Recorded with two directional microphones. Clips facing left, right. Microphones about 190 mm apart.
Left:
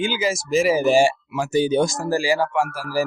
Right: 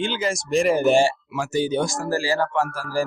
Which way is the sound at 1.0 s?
15° left (ahead or behind).